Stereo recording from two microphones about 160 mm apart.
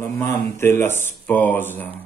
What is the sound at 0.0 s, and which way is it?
Speech, 15° left (ahead or behind).